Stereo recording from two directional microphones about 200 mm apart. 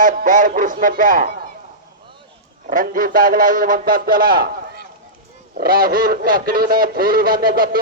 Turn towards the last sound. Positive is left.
turn(degrees=-45)  # may be behind; listen again after turning